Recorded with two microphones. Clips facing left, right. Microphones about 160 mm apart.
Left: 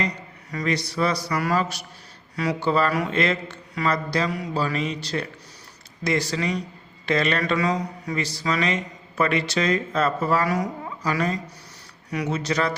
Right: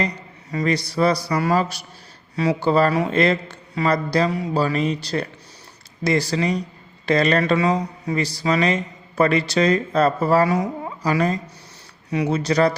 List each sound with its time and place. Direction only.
0.5 s speech: 35° right (ahead or behind)